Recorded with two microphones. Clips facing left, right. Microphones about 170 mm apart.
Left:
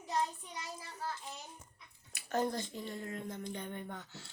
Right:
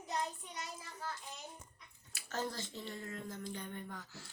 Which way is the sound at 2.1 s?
20° left (ahead or behind).